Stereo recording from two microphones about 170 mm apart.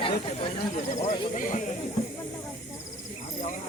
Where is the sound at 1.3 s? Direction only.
50° left (ahead or behind).